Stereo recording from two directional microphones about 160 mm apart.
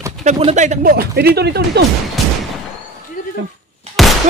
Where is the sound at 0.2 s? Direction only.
40° right (ahead or behind).